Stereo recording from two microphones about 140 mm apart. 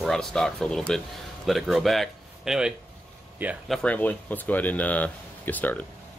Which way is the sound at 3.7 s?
5° left (ahead or behind).